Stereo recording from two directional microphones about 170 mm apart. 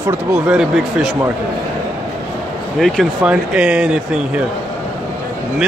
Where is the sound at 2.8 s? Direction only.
Centre (ahead or behind).